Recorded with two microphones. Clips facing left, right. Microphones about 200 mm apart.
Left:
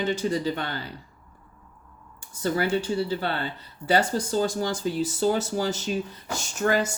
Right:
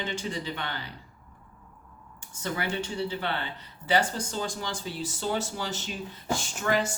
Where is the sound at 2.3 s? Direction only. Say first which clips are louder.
Left 7 dB; 40° left (ahead or behind).